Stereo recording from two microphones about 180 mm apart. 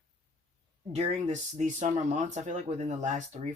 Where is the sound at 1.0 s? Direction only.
40° right (ahead or behind).